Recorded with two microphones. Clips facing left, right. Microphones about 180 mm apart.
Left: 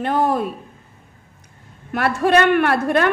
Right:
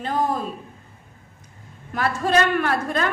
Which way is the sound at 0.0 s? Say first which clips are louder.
Left 5 dB; 70° left (ahead or behind).